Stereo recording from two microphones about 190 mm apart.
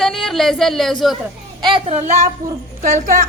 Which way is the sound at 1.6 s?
30° right (ahead or behind).